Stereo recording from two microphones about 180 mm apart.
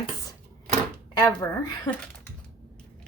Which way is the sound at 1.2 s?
20° left (ahead or behind).